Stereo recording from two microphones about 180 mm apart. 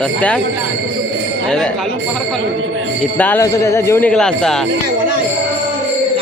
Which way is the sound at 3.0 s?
10° left (ahead or behind).